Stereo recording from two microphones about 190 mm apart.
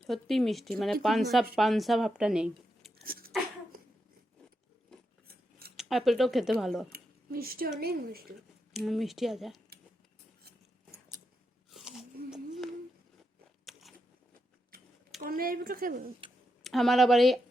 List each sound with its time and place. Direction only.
0.1 s speech: centre (ahead or behind)
3.0 s a sound: 50° right (ahead or behind)
5.3 s scissors: 55° right (ahead or behind)
5.7 s speech: centre (ahead or behind)
6.9 s speech: 50° right (ahead or behind)
8.7 s speech: centre (ahead or behind)
11.7 s a sound: centre (ahead or behind)
15.2 s speech: 50° right (ahead or behind)
16.6 s speech: centre (ahead or behind)